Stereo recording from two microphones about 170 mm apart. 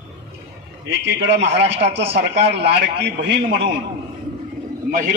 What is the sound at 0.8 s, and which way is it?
A man's voice, 90° right.